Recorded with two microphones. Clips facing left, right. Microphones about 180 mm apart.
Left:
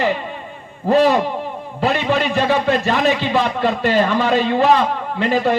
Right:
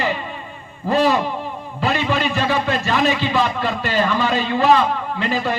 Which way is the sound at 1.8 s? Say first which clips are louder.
Left 2 dB; 60° left (ahead or behind).